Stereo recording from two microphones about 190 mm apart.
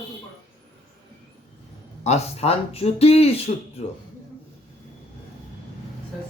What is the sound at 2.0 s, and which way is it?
Speech, 35° left (ahead or behind).